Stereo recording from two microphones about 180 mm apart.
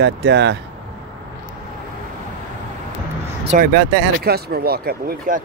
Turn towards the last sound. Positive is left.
turn(degrees=-55)  # may be behind; listen again after turning